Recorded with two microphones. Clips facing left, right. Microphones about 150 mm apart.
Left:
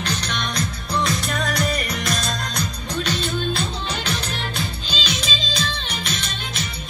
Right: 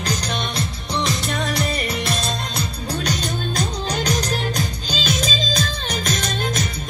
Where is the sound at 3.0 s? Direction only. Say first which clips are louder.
Left 3 dB; 40° right (ahead or behind).